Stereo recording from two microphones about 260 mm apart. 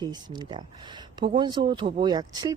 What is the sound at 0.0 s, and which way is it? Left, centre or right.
Speech, centre.